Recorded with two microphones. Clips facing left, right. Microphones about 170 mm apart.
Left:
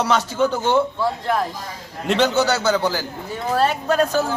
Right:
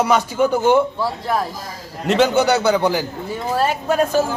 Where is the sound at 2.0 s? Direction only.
5° right (ahead or behind).